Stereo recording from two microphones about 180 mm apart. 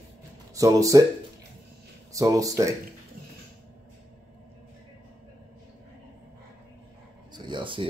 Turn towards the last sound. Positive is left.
turn(degrees=-25)  # may be behind; listen again after turning